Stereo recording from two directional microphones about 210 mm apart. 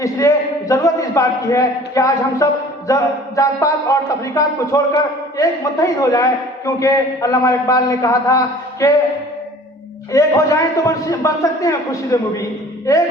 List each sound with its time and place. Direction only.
0.0 s a man's voice: 15° left (ahead or behind)
10.1 s a man's voice: 15° left (ahead or behind)